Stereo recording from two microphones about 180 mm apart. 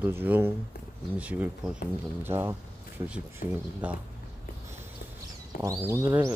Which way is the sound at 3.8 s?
5° right (ahead or behind).